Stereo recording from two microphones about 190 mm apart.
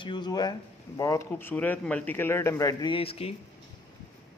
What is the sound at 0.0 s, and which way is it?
Speech, 25° left (ahead or behind).